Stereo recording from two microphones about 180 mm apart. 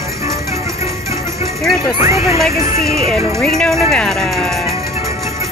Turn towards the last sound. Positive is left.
turn(degrees=5)  # may be behind; listen again after turning